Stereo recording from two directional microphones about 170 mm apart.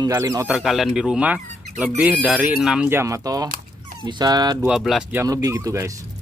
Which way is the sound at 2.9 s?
15° right (ahead or behind).